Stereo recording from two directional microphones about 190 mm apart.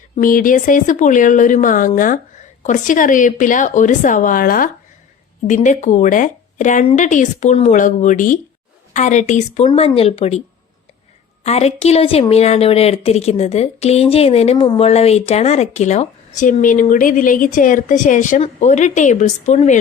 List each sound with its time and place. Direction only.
0.2 s a woman's voice: 45° left (ahead or behind)
11.4 s speech: 35° left (ahead or behind)